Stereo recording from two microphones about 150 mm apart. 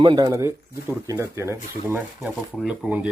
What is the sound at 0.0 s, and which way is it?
Speech, 30° right (ahead or behind).